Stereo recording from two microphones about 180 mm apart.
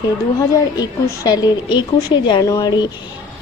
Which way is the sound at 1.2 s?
20° left (ahead or behind).